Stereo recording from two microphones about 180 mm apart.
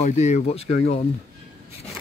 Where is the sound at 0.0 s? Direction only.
40° left (ahead or behind).